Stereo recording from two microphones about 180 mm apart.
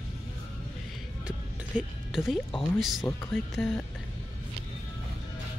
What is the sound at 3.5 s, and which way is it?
Speech, centre (ahead or behind).